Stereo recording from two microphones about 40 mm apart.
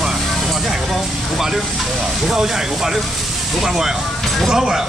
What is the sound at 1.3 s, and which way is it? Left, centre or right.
Speech, centre.